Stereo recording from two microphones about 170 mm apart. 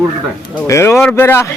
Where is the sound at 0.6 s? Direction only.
15° left (ahead or behind).